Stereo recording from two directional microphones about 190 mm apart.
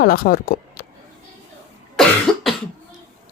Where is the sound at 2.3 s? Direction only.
Centre (ahead or behind).